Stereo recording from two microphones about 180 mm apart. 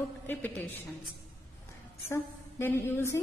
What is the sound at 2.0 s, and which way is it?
A woman's voice, 15° left (ahead or behind).